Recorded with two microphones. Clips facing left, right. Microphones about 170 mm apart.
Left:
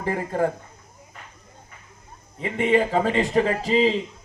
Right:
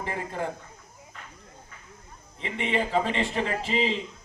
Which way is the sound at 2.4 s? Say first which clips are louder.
Left 8 dB; 45° left (ahead or behind).